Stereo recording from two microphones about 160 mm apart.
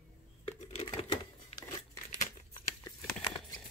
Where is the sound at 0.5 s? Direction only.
45° left (ahead or behind).